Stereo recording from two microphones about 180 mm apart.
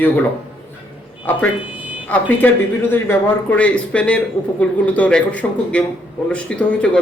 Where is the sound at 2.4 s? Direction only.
10° left (ahead or behind).